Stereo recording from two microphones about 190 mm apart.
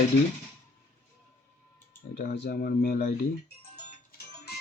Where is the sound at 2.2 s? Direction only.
50° left (ahead or behind).